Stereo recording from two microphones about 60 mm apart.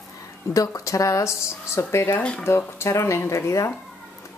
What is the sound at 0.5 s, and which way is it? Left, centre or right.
Speech, left.